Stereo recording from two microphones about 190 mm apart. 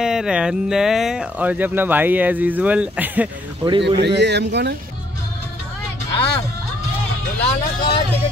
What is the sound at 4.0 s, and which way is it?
Speech, 65° right (ahead or behind).